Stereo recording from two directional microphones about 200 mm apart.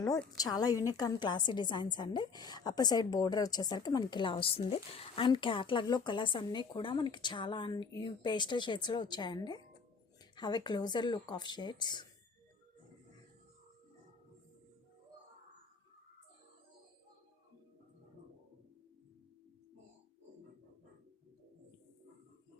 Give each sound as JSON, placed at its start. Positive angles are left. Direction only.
{"t": 0.3, "sound": "a woman's voice", "side_deg": 20}